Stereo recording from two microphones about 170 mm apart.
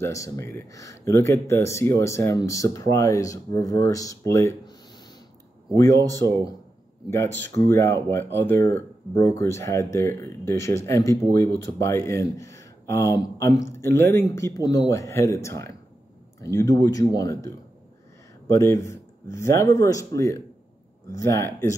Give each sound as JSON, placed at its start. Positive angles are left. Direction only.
{"t": 0.0, "sound": "speech", "side_deg": 15}
{"t": 6.2, "sound": "speech", "side_deg": 15}